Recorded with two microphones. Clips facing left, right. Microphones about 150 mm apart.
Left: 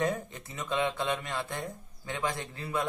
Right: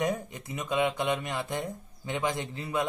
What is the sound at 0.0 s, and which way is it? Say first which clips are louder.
Speech: right 1 dB; 15° right (ahead or behind).